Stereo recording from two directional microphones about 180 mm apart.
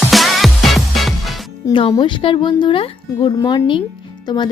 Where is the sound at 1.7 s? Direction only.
25° left (ahead or behind).